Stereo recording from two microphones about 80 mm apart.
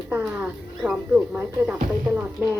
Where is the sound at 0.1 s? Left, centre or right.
Centre.